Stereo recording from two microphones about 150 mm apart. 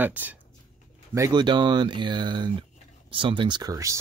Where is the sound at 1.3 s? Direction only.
30° right (ahead or behind).